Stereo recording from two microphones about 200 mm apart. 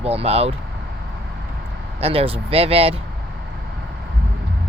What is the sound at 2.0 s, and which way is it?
Speech, 30° right (ahead or behind).